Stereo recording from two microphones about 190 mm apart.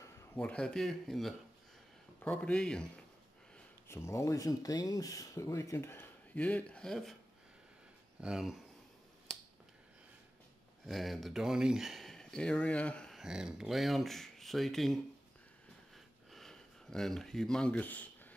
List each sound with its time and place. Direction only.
0.4 s speech: 5° left (ahead or behind)
8.2 s speech: 5° right (ahead or behind)
10.9 s speech: centre (ahead or behind)
16.3 s a sound: centre (ahead or behind)